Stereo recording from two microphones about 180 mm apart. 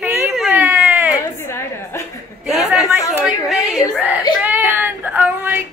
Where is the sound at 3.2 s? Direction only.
5° right (ahead or behind).